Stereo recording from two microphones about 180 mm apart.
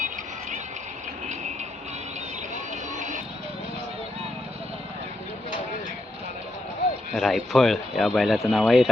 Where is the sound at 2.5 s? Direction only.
45° right (ahead or behind).